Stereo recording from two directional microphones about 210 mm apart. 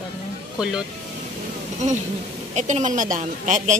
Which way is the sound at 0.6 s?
5° right (ahead or behind).